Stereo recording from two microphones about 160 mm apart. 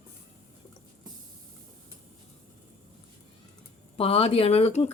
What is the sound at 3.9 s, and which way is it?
Speech, 35° left (ahead or behind).